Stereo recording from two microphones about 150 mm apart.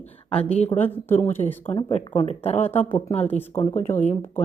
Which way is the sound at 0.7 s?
10° left (ahead or behind).